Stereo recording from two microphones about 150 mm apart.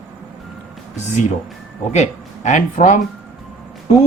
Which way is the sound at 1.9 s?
50° left (ahead or behind).